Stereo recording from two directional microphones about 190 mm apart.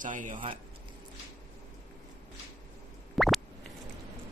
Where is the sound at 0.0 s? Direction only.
45° right (ahead or behind).